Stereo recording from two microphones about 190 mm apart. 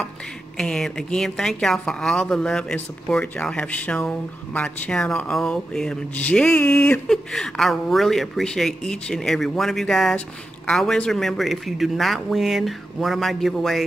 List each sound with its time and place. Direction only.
0.6 s speech: centre (ahead or behind)